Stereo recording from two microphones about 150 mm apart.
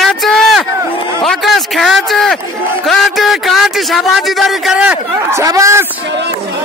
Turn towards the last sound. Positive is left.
turn(degrees=-20)  # may be behind; listen again after turning